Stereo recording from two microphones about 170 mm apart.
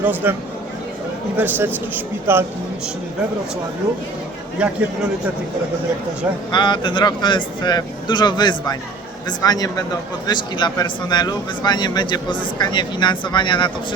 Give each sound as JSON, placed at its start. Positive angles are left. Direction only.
{"t": 0.0, "sound": "speech", "side_deg": -10}
{"t": 1.4, "sound": "speech", "side_deg": -10}
{"t": 4.6, "sound": "speech", "side_deg": -5}
{"t": 6.5, "sound": "speech", "side_deg": 25}